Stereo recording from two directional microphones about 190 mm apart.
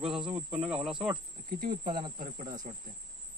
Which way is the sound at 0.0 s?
Centre (ahead or behind).